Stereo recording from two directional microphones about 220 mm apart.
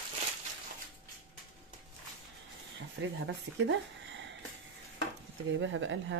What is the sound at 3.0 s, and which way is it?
Speech, 55° right (ahead or behind).